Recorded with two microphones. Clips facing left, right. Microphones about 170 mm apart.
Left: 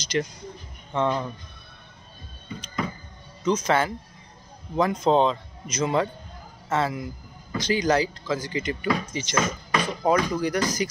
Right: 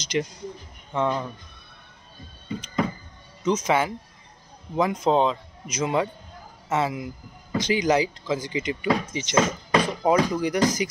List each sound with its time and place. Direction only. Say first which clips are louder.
0.0 s speech: even; 20° right (ahead or behind)
0.9 s speech: even; 5° right (ahead or behind)
3.5 s speech: even; 10° right (ahead or behind)